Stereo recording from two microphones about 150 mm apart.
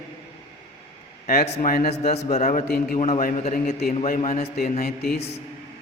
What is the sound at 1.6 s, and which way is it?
Speech, 80° left.